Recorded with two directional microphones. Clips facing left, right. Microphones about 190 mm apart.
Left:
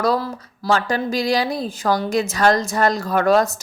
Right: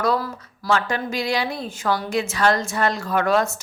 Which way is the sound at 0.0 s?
30° left (ahead or behind).